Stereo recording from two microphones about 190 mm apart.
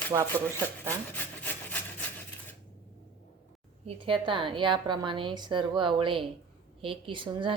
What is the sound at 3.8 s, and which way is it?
A woman's voice, 25° right (ahead or behind).